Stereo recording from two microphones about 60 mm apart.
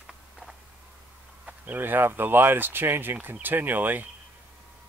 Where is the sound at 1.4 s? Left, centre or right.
Right.